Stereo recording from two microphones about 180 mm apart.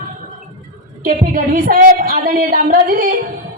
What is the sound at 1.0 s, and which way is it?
A woman's voice, 50° right (ahead or behind).